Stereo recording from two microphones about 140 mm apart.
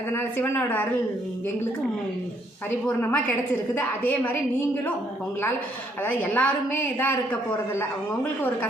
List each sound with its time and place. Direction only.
0.1 s a woman's voice: 15° left (ahead or behind)
2.6 s a woman's voice: 15° left (ahead or behind)
6.0 s a woman's voice: 10° left (ahead or behind)